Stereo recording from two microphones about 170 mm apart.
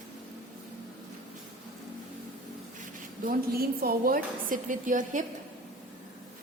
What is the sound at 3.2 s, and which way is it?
A woman's voice, 60° right (ahead or behind).